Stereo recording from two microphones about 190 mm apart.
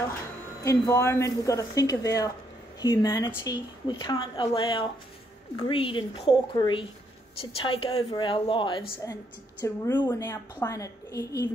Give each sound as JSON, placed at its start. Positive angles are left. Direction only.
{"t": 0.7, "sound": "a woman's voice", "side_deg": 15}